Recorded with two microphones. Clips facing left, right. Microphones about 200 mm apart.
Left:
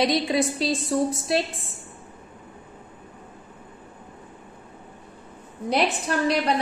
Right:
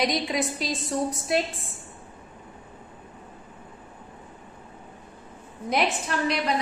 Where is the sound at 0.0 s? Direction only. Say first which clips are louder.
Left 4 dB; 30° left (ahead or behind).